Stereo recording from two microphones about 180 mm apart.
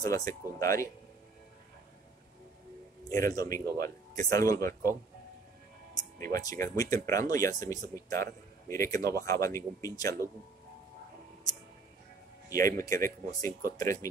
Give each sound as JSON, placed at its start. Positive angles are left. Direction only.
{"t": 0.0, "sound": "speech", "side_deg": 20}
{"t": 3.1, "sound": "speech", "side_deg": 20}
{"t": 6.1, "sound": "speech", "side_deg": -50}
{"t": 6.4, "sound": "speech", "side_deg": 15}
{"t": 12.4, "sound": "speech", "side_deg": 20}
{"t": 13.5, "sound": "speech", "side_deg": -50}